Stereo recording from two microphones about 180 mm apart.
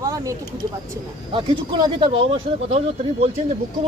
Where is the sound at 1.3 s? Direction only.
30° right (ahead or behind).